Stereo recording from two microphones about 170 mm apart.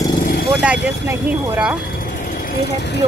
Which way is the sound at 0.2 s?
65° left (ahead or behind).